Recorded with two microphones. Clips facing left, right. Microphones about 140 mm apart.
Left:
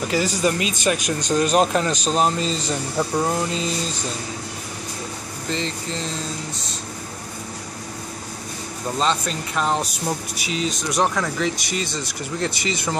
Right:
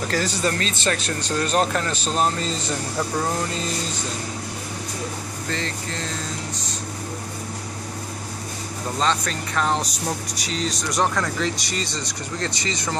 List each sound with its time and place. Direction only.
0.4 s speech: 10° left (ahead or behind)
5.5 s speech: 20° left (ahead or behind)
9.0 s speech: 15° left (ahead or behind)